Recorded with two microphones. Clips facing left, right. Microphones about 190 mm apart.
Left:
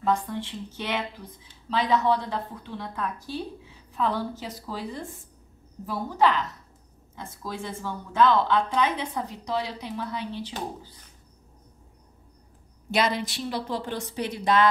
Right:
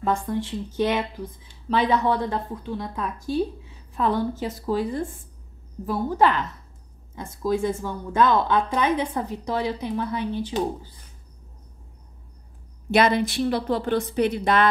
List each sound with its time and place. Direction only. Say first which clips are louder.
0.3 s a woman's voice: right 6 dB; 45° right (ahead or behind)
1.7 s a woman's voice: right 2 dB; 60° right (ahead or behind)
12.9 s a woman's voice: right 6 dB; 55° right (ahead or behind)